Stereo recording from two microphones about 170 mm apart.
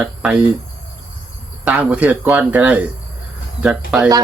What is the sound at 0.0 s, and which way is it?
Speech, 5° right (ahead or behind).